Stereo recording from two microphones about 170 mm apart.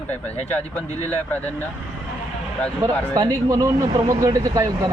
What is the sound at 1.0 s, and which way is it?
Speech, 10° left (ahead or behind).